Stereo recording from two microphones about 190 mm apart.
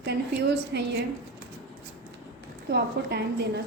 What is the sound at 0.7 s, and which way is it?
Speech, 60° right (ahead or behind).